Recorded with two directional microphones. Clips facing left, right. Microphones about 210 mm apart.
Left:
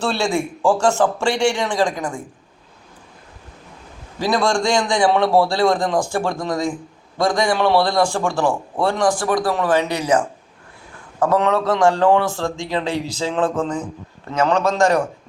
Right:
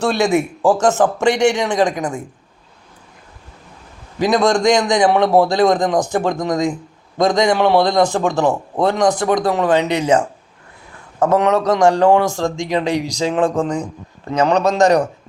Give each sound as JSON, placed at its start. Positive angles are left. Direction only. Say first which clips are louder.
{"t": 0.0, "sound": "a man's voice", "louder": "right 5 dB", "side_deg": -15}
{"t": 4.2, "sound": "a man's voice", "louder": "right 4 dB", "side_deg": -20}